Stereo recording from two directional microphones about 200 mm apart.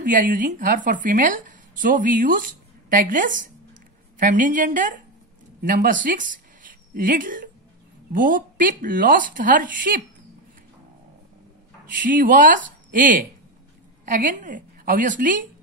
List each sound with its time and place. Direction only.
0.0 s a woman's voice: 40° right (ahead or behind)
11.8 s speech: 45° right (ahead or behind)